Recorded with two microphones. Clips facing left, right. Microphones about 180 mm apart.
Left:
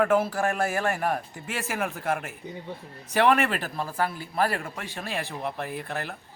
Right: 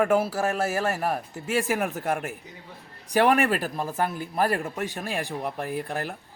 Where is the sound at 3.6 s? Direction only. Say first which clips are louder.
Right 1 dB; 15° right (ahead or behind).